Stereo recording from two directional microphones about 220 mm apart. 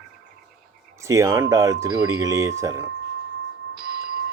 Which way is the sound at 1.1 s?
15° right (ahead or behind).